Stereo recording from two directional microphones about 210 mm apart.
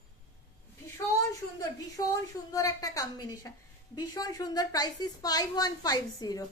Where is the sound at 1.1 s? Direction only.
15° left (ahead or behind).